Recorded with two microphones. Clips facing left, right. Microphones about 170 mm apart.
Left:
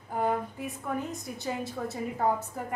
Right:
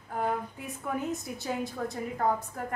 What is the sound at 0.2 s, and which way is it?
A woman's voice, centre (ahead or behind).